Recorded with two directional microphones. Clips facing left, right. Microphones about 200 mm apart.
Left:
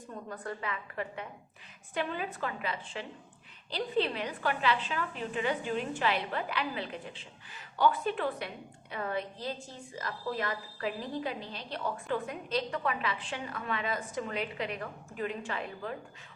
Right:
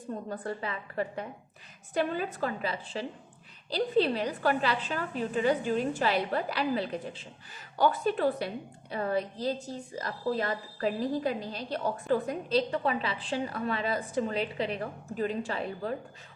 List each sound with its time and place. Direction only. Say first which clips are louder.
0.1 s a woman's voice: right 4 dB; 35° right (ahead or behind)